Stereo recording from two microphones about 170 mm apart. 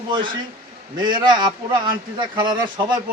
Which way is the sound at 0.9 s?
25° right (ahead or behind).